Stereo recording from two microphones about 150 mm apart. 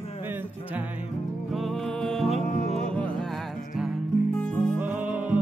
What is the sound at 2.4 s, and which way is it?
Music, 50° left (ahead or behind).